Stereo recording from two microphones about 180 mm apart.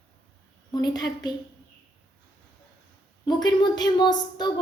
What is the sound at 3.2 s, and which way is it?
A woman's voice, 25° left (ahead or behind).